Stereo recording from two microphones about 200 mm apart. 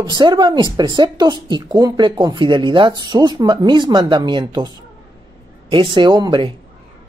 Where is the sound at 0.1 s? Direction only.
20° right (ahead or behind).